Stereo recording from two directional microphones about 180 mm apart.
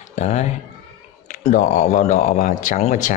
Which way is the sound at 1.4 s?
40° left (ahead or behind).